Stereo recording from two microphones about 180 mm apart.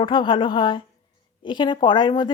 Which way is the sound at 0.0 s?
25° left (ahead or behind).